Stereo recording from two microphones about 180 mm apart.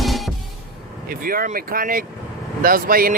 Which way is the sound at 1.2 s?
50° right (ahead or behind).